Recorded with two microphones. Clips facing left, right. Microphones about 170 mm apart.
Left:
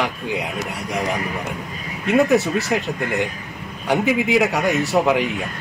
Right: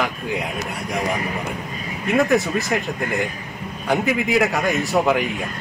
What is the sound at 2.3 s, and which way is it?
Speech, 75° left (ahead or behind).